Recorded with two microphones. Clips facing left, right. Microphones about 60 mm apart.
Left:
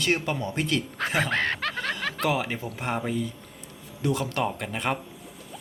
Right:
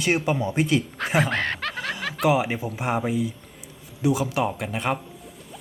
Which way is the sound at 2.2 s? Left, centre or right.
Centre.